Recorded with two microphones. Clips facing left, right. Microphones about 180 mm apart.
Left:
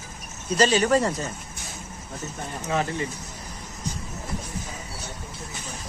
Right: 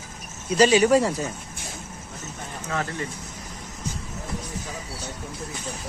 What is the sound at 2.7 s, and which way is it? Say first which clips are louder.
Speech: left 3 dB; 20° left (ahead or behind).